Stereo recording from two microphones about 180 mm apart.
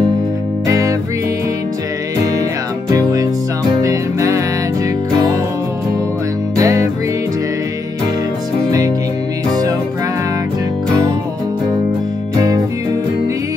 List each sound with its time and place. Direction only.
0.7 s music: 20° right (ahead or behind)
2.9 s music: 20° right (ahead or behind)
6.5 s music: 20° right (ahead or behind)
8.6 s music: 20° right (ahead or behind)